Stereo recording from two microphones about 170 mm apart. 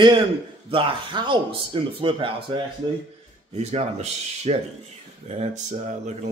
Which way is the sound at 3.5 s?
40° right (ahead or behind).